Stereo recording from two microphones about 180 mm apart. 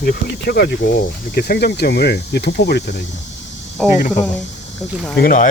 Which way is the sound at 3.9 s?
45° left (ahead or behind).